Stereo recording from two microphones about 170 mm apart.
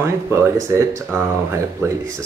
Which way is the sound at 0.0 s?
15° right (ahead or behind).